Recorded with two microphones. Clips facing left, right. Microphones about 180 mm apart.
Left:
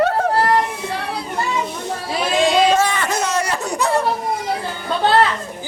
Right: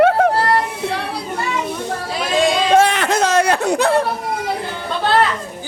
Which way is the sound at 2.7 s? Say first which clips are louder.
Right 5 dB; 65° right (ahead or behind).